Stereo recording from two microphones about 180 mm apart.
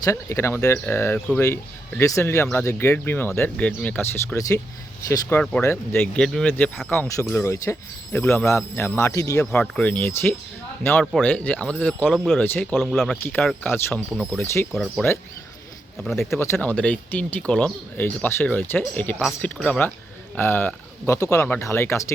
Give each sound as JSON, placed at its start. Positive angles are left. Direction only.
{"t": 0.0, "sound": "speech", "side_deg": 15}
{"t": 5.4, "sound": "speech", "side_deg": 5}
{"t": 12.4, "sound": "speech", "side_deg": 10}
{"t": 12.7, "sound": "speech", "side_deg": 0}
{"t": 13.7, "sound": "speech", "side_deg": 10}
{"t": 16.4, "sound": "speech", "side_deg": 10}